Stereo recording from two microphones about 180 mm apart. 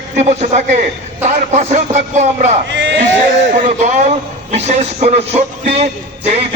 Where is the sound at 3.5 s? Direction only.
45° right (ahead or behind).